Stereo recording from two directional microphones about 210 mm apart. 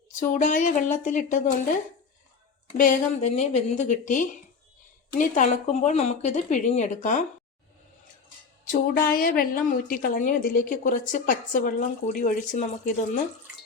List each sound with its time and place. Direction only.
0.2 s a woman's voice: 40° left (ahead or behind)
2.7 s a woman's voice: 40° left (ahead or behind)
8.6 s a woman's voice: 40° left (ahead or behind)